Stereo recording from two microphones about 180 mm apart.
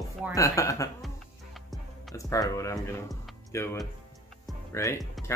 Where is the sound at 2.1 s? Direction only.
20° left (ahead or behind).